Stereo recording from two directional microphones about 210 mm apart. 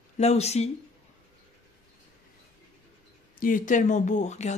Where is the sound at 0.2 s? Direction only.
30° left (ahead or behind).